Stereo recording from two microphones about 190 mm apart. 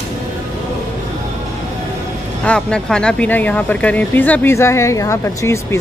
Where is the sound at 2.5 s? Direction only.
5° left (ahead or behind).